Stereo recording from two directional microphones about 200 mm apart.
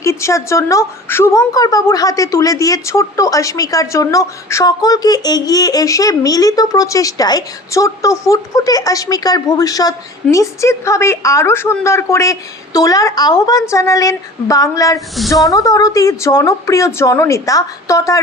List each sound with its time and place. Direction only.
0.0 s a woman's voice: 15° left (ahead or behind)